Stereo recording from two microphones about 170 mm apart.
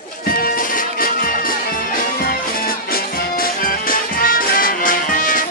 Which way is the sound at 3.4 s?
55° left (ahead or behind).